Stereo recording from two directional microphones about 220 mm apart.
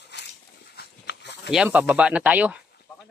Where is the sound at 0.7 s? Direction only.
50° left (ahead or behind).